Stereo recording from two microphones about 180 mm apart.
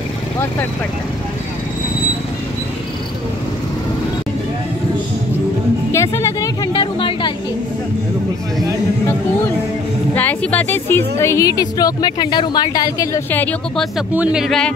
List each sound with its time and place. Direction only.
5.9 s music: 15° left (ahead or behind)
10.1 s a woman's voice: 10° left (ahead or behind)
13.9 s speech: 5° right (ahead or behind)